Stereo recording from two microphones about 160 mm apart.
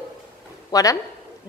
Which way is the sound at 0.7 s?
20° left (ahead or behind).